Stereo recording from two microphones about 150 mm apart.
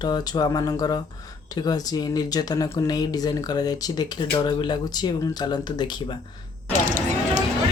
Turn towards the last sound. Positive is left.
turn(degrees=-55)  # may be behind; listen again after turning